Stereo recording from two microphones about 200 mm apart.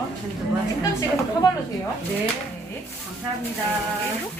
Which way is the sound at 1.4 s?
20° left (ahead or behind).